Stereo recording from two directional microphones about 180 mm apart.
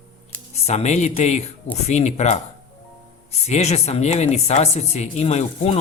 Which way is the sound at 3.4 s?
40° left (ahead or behind).